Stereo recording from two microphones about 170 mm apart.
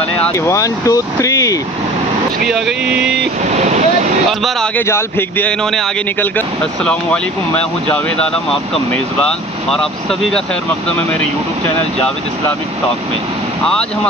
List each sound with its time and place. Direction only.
0.3 s speech: 20° left (ahead or behind)
2.4 s speech: 5° right (ahead or behind)
3.4 s speech: 45° right (ahead or behind)
4.3 s speech: centre (ahead or behind)
4.7 s speech: 15° left (ahead or behind)